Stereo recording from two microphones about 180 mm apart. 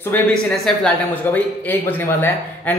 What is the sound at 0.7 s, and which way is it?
A man's voice, 10° left (ahead or behind).